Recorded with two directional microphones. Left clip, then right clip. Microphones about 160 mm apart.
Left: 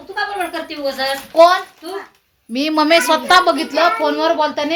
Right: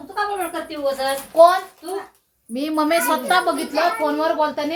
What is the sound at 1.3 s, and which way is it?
Child singing, 55° left (ahead or behind).